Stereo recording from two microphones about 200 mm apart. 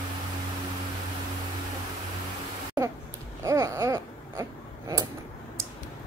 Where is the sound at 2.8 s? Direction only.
15° right (ahead or behind).